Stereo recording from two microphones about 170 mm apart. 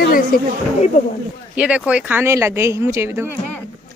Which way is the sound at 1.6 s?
5° right (ahead or behind).